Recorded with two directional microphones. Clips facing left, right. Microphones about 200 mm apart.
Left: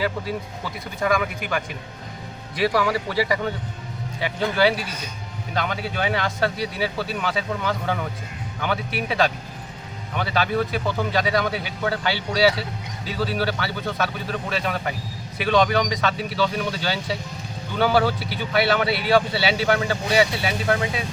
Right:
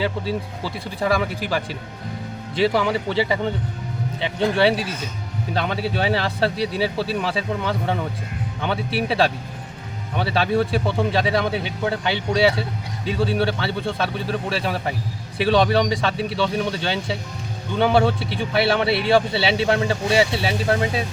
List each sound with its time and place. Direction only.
0.0 s speech: 30° right (ahead or behind)